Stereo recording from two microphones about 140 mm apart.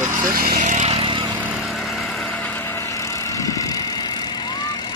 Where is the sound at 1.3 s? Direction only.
Centre (ahead or behind).